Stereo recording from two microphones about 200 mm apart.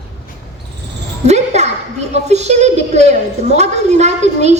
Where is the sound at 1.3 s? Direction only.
35° right (ahead or behind).